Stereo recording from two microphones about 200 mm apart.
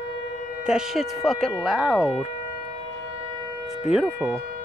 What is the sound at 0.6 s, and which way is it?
Speech, centre (ahead or behind).